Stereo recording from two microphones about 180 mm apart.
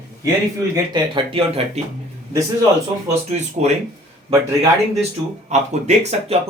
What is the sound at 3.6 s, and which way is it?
Speech, 40° right (ahead or behind).